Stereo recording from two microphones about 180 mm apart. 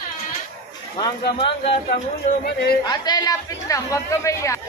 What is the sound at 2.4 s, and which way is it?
Speech, 60° left (ahead or behind).